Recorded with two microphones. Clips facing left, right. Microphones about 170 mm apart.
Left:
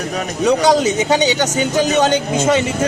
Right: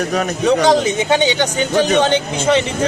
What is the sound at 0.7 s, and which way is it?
Speech, 40° left (ahead or behind).